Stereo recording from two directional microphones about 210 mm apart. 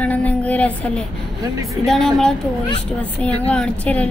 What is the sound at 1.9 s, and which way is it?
A woman's voice, centre (ahead or behind).